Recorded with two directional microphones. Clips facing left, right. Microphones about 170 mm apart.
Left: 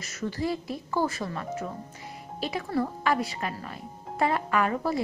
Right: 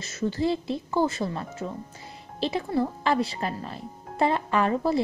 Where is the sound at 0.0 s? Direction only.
25° right (ahead or behind).